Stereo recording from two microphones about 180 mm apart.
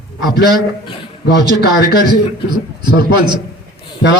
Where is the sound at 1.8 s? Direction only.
20° right (ahead or behind).